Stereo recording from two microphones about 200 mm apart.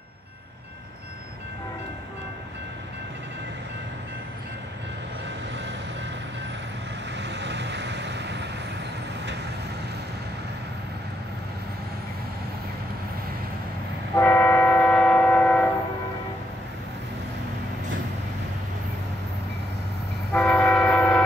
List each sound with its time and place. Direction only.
7.2 s vehicle: 60° right (ahead or behind)
14.1 s train: 10° left (ahead or behind)
20.3 s train: 5° left (ahead or behind)